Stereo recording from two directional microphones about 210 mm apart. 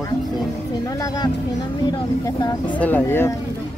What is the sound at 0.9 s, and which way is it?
Speech, 15° left (ahead or behind).